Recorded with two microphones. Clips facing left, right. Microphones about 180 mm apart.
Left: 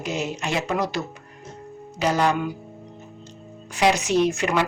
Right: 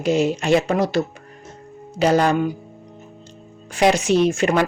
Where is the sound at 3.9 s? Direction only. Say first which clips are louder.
Right 4 dB; 30° right (ahead or behind).